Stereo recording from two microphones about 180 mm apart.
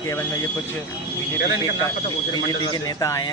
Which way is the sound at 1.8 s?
20° left (ahead or behind).